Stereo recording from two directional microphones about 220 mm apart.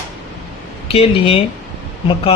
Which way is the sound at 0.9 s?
25° left (ahead or behind).